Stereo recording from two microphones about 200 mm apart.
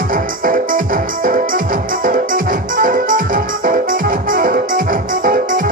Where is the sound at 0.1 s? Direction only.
45° right (ahead or behind).